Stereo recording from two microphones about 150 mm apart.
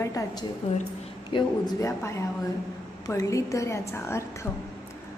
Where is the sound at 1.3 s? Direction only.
35° left (ahead or behind).